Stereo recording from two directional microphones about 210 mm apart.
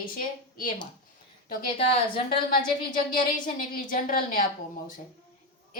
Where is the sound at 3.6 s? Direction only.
40° left (ahead or behind).